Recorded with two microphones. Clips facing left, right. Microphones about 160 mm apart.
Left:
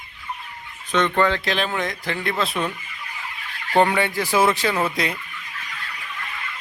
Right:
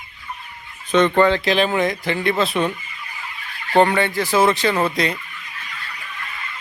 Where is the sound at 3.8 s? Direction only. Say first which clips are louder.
Right 3 dB; 5° left (ahead or behind).